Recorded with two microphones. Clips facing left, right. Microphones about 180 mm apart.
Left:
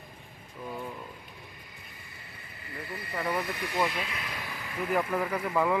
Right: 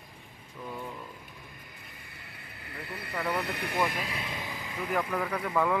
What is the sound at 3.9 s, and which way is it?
Speech, 40° right (ahead or behind).